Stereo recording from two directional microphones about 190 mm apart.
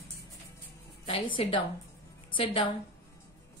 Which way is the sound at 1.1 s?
30° left (ahead or behind).